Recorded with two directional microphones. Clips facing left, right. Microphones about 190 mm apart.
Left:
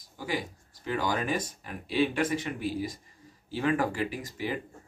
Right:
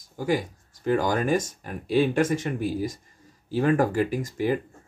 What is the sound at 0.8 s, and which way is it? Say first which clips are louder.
Speech: right 7 dB; 45° right (ahead or behind).